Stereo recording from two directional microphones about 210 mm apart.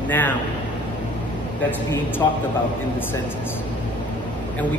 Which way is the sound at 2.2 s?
20° left (ahead or behind).